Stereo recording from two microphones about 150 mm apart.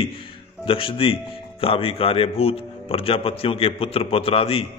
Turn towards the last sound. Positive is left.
turn(degrees=40)  # may be behind; listen again after turning